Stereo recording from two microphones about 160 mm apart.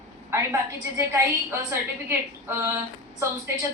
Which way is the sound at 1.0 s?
20° right (ahead or behind).